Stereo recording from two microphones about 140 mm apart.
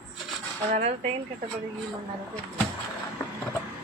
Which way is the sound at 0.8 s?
50° right (ahead or behind).